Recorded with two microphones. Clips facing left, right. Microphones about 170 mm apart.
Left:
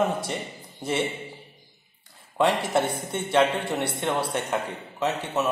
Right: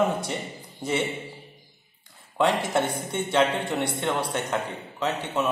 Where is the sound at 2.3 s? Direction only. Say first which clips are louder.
Left 1 dB; 5° left (ahead or behind).